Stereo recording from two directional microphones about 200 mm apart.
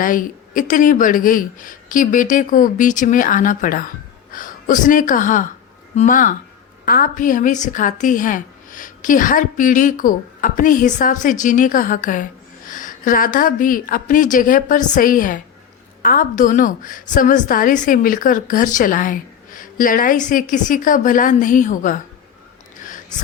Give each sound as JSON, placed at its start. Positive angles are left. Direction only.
{"t": 0.0, "sound": "a woman's voice", "side_deg": 45}